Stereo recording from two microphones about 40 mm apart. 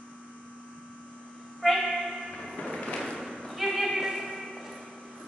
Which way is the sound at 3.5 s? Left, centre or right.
Centre.